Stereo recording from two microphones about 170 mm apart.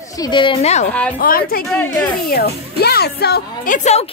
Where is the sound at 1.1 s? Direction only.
60° left (ahead or behind).